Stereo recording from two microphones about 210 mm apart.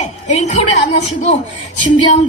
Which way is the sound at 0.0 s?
30° left (ahead or behind).